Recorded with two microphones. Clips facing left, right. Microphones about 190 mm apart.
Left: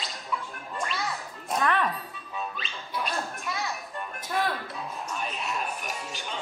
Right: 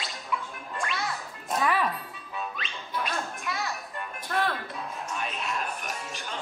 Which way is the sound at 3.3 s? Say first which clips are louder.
Even; centre (ahead or behind).